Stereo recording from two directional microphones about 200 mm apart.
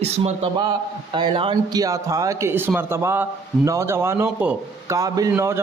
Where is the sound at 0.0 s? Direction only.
30° right (ahead or behind).